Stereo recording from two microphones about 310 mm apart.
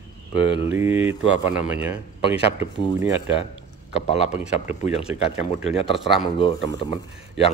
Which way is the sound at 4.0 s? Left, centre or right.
Centre.